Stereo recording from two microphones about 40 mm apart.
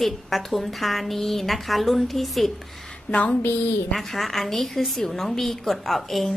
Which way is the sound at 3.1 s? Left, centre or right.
Left.